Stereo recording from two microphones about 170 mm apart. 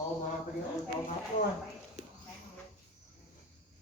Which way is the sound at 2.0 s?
40° right (ahead or behind).